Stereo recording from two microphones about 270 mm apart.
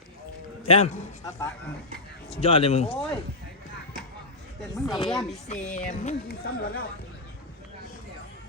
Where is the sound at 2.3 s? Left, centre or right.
Left.